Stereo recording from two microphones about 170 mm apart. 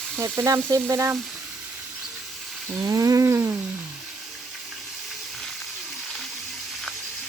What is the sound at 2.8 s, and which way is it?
Roaring cats, 20° right (ahead or behind).